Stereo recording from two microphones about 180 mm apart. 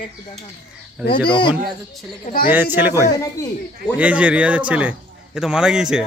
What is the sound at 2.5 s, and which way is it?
Speech, 10° right (ahead or behind).